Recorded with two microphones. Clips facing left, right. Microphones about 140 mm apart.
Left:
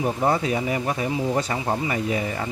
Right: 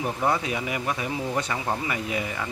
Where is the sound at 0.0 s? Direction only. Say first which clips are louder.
Left 3 dB; 30° left (ahead or behind).